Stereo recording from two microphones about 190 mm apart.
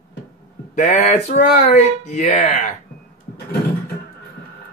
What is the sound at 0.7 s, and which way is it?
Speech, 40° left (ahead or behind).